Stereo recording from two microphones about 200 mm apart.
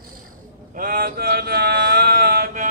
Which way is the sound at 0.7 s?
45° right (ahead or behind).